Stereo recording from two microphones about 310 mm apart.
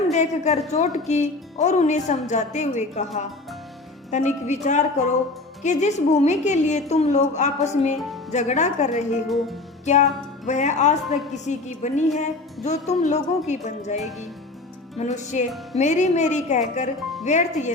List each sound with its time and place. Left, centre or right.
0.1 s speech: left
4.1 s speech: left
9.8 s music: left
11.0 s a woman's voice: centre
11.4 s speech: left